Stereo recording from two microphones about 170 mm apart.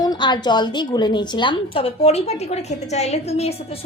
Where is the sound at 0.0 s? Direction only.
25° left (ahead or behind).